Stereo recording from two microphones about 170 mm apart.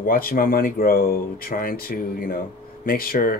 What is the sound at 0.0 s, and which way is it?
Speech, 60° left (ahead or behind).